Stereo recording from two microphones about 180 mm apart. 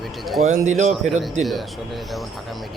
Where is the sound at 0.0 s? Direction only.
Centre (ahead or behind).